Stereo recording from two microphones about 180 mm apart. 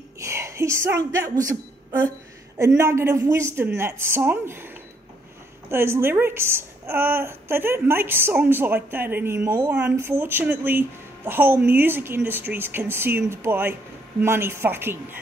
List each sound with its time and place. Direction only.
0.2 s a woman's voice: 15° right (ahead or behind)
5.7 s a woman's voice: 15° right (ahead or behind)